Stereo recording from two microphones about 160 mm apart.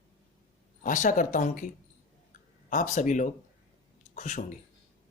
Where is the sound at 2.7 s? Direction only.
55° left (ahead or behind).